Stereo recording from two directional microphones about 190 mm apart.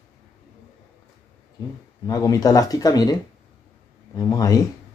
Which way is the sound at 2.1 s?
20° left (ahead or behind).